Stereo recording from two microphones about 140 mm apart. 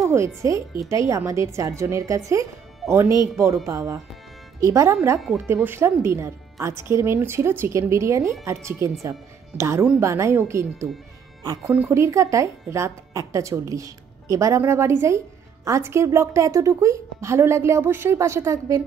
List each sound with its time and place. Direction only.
0.0 s speech: 20° right (ahead or behind)
11.9 s speech: 20° right (ahead or behind)